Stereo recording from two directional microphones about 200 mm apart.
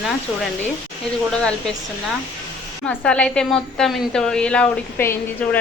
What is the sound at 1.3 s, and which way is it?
Speech, 5° left (ahead or behind).